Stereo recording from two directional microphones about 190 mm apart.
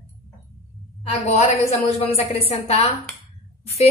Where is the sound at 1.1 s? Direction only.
35° left (ahead or behind).